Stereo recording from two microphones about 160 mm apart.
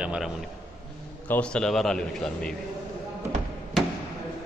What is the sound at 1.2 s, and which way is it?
A man's voice, 10° left (ahead or behind).